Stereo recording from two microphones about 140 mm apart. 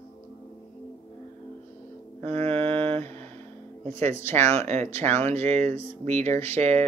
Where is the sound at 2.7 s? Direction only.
10° left (ahead or behind).